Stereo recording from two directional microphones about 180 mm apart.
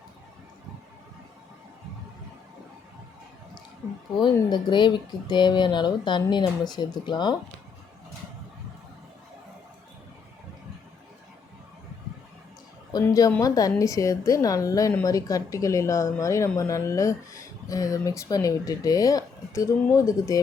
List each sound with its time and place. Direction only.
4.2 s speech: 25° left (ahead or behind)
12.9 s a woman's voice: 20° left (ahead or behind)